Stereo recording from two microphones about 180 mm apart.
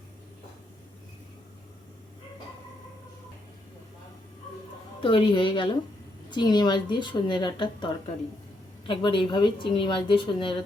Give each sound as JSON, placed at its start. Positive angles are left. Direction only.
{"t": 5.0, "sound": "speech", "side_deg": 30}
{"t": 8.9, "sound": "speech", "side_deg": 25}